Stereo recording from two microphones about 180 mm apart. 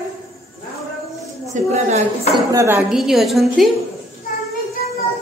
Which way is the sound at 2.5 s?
15° right (ahead or behind).